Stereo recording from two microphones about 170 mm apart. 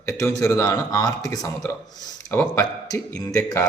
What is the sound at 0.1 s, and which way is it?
A man's voice, 20° left (ahead or behind).